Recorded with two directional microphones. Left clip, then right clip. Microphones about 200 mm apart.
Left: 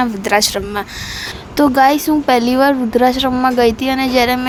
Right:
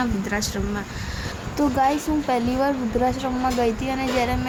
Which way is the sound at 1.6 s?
35° left (ahead or behind).